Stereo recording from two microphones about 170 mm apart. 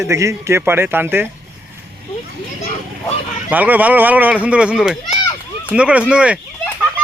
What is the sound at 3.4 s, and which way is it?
Speech, 10° right (ahead or behind).